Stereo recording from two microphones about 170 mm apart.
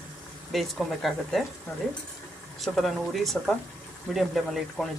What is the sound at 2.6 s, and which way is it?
Speech, centre (ahead or behind).